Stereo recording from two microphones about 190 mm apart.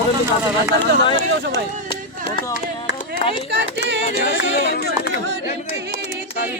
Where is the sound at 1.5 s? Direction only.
25° left (ahead or behind).